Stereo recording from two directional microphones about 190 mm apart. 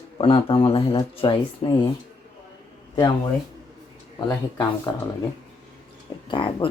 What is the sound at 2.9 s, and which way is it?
Speech, 20° left (ahead or behind).